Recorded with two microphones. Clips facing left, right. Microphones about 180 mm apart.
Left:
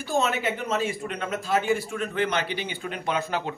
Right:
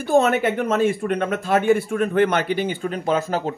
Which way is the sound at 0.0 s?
55° right (ahead or behind).